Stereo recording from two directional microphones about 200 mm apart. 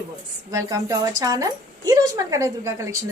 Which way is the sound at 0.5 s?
15° right (ahead or behind).